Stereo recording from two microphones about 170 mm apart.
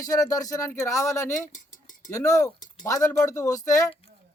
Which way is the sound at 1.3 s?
50° left (ahead or behind).